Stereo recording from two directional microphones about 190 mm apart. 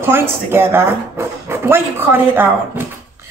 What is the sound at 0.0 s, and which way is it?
Speech, 10° right (ahead or behind).